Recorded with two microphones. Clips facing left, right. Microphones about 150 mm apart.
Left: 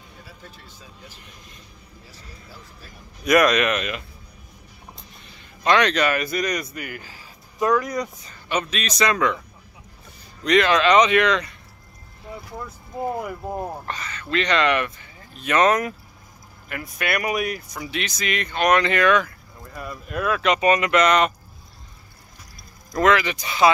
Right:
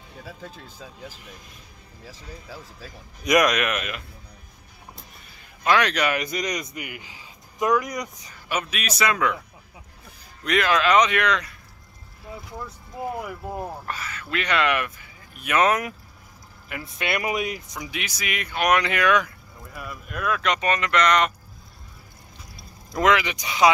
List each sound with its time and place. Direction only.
2.0 s speech: 90° right
3.3 s speech: 15° right (ahead or behind)
5.6 s speech: 5° right (ahead or behind)
10.4 s speech: 5° right (ahead or behind); by 13.8 s 10° left (ahead or behind)
13.8 s speech: 5° right (ahead or behind)
16.6 s speech: 20° right (ahead or behind); by 21.3 s 5° left (ahead or behind)
22.9 s speech: 15° right (ahead or behind)